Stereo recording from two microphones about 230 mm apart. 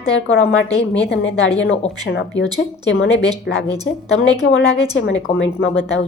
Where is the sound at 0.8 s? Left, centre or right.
Left.